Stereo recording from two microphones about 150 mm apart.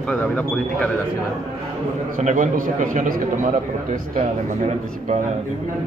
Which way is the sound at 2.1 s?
55° right (ahead or behind).